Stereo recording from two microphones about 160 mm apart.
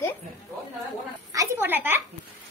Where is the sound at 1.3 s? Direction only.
15° right (ahead or behind).